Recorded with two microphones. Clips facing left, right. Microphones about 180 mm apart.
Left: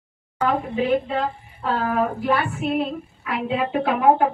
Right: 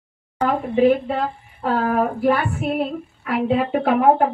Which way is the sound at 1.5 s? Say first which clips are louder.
Right 3 dB; 45° right (ahead or behind).